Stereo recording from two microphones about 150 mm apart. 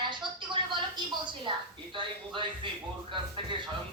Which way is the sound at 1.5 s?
35° right (ahead or behind).